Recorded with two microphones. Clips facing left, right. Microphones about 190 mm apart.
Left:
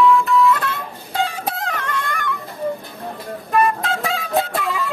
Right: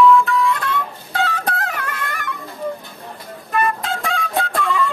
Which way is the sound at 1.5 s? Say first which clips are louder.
Even; 5° right (ahead or behind).